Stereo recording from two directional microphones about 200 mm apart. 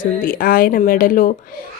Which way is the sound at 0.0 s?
45° left (ahead or behind).